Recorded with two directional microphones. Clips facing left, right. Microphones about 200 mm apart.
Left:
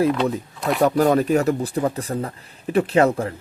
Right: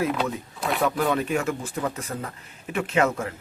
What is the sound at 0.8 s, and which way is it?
Speech, 40° left (ahead or behind).